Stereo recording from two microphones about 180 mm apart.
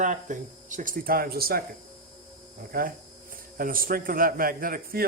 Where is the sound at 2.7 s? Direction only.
50° right (ahead or behind).